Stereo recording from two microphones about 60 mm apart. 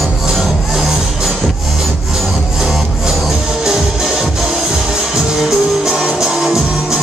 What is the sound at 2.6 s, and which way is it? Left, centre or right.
Music, centre.